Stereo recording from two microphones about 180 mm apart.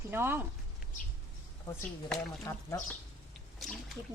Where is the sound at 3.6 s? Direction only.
Centre (ahead or behind).